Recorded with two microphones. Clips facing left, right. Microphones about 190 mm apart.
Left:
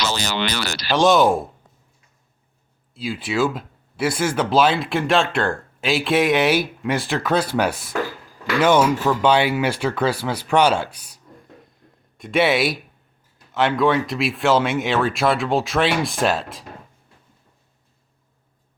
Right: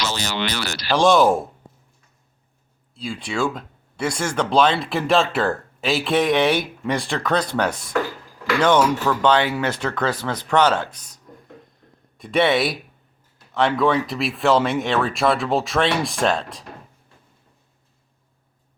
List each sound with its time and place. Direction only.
0.0 s speech: 90° left
0.9 s speech: centre (ahead or behind)
2.9 s speech: 5° left (ahead or behind)